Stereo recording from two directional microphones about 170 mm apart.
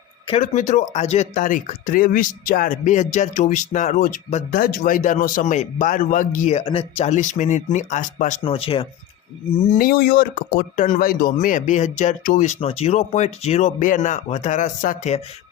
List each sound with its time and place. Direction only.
0.3 s speech: 45° left (ahead or behind)
4.5 s speech: 60° left (ahead or behind)
6.6 s speech: 35° left (ahead or behind)
8.4 s speech: 35° left (ahead or behind)
9.6 s speech: 55° left (ahead or behind)
12.5 s speech: 35° left (ahead or behind)